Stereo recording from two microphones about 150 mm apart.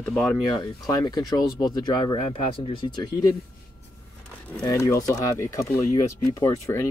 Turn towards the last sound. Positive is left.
turn(degrees=20)  # may be behind; listen again after turning